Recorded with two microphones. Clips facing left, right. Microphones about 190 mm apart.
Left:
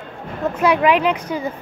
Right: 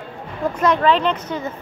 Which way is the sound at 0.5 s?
10° left (ahead or behind).